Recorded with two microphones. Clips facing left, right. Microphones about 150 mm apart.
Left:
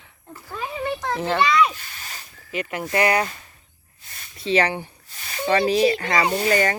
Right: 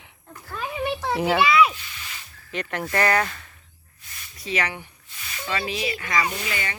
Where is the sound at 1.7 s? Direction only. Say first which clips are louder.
Left 1 dB; 45° left (ahead or behind).